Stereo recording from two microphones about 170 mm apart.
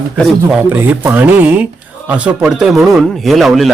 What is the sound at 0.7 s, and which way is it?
Speech, 10° right (ahead or behind).